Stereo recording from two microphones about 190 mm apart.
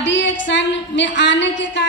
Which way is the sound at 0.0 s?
70° left (ahead or behind).